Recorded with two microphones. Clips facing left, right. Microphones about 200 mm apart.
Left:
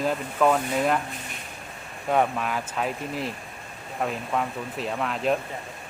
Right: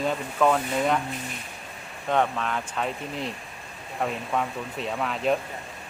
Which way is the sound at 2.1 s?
10° left (ahead or behind).